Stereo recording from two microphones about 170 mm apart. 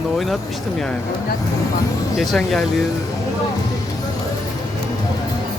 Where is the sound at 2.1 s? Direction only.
Centre (ahead or behind).